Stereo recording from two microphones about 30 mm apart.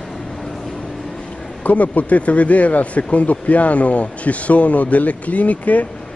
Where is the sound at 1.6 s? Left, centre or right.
Left.